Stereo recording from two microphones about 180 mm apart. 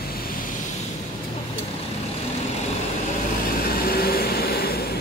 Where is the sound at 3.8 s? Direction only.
60° left (ahead or behind).